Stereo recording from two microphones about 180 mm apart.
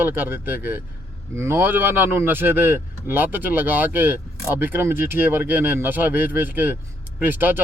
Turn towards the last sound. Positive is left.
turn(degrees=-10)  # may be behind; listen again after turning